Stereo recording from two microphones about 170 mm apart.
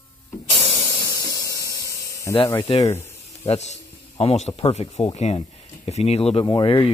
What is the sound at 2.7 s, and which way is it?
Speech, 40° left (ahead or behind).